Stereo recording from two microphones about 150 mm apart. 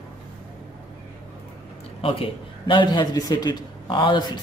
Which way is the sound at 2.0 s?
40° left (ahead or behind).